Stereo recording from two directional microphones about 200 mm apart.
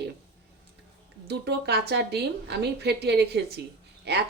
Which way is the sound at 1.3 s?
55° right (ahead or behind).